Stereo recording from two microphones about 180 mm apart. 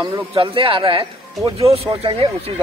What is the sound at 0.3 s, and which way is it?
Speech, 30° right (ahead or behind).